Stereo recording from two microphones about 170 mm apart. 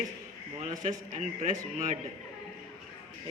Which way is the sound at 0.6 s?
45° right (ahead or behind).